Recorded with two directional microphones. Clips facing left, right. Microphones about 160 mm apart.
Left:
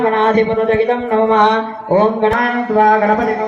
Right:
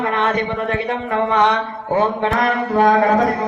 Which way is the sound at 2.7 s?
50° left (ahead or behind).